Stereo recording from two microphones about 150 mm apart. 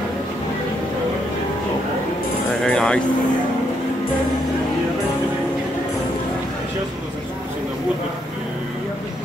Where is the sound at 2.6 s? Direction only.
5° left (ahead or behind).